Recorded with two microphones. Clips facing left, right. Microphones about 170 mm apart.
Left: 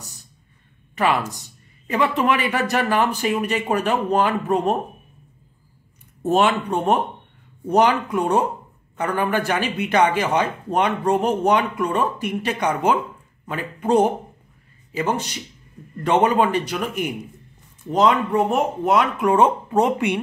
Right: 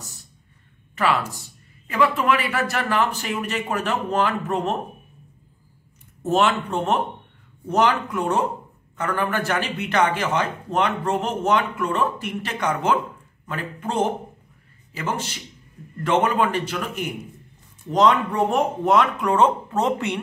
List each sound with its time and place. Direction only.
0.9 s a man's voice: 15° left (ahead or behind)
6.2 s a man's voice: 15° left (ahead or behind)